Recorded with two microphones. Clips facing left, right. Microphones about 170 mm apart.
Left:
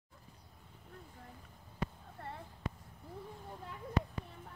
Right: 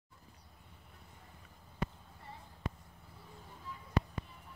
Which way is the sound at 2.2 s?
60° left (ahead or behind).